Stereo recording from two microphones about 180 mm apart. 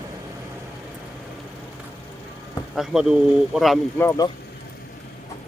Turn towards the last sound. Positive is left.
turn(degrees=15)  # may be behind; listen again after turning